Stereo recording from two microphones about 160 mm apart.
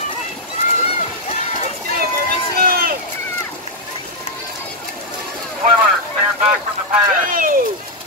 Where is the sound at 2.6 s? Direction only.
65° right (ahead or behind).